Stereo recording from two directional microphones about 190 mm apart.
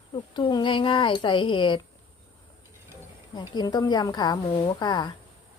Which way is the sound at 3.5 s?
25° left (ahead or behind).